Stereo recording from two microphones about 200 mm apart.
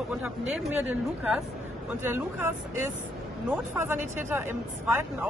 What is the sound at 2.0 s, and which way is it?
Speech, 10° right (ahead or behind).